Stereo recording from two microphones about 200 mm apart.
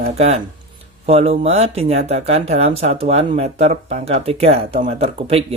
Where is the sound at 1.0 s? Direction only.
30° right (ahead or behind).